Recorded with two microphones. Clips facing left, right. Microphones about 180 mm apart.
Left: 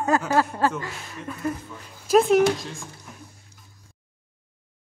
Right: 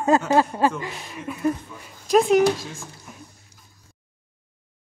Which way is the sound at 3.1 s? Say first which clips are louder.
Right 1 dB; 5° right (ahead or behind).